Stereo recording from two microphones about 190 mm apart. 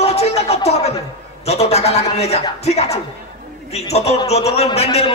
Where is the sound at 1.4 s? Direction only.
35° left (ahead or behind).